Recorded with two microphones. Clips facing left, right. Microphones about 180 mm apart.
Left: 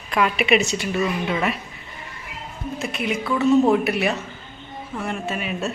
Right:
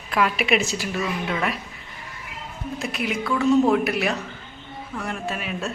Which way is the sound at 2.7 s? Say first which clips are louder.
Left 1 dB; centre (ahead or behind).